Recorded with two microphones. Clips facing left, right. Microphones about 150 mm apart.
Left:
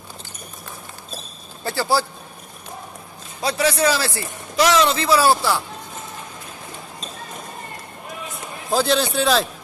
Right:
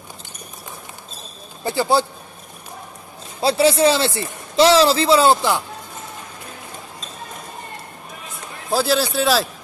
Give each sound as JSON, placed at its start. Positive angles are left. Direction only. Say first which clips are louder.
{"t": 1.6, "sound": "speech", "louder": "right 3 dB", "side_deg": -20}
{"t": 3.3, "sound": "speech", "louder": "right 5 dB", "side_deg": -30}
{"t": 8.6, "sound": "a man's voice", "louder": "even", "side_deg": -5}